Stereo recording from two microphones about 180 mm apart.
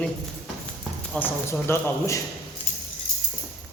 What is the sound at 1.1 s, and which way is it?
Speech, 10° left (ahead or behind).